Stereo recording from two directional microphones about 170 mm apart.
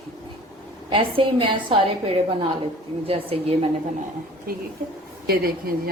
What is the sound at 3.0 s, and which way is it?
Speech, 35° right (ahead or behind).